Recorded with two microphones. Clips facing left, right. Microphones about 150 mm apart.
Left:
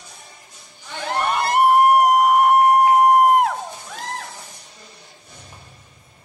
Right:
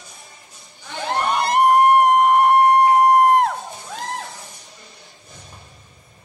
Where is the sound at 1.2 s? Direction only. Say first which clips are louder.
Even; centre (ahead or behind).